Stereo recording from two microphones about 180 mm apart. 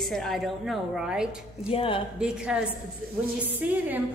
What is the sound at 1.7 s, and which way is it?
Speech, 30° left (ahead or behind).